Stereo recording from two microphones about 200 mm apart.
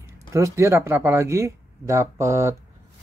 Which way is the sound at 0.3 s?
15° right (ahead or behind).